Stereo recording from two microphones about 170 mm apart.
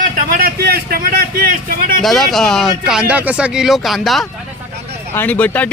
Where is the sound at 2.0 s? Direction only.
Centre (ahead or behind).